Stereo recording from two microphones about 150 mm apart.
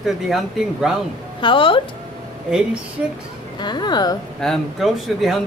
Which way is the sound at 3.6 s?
30° left (ahead or behind).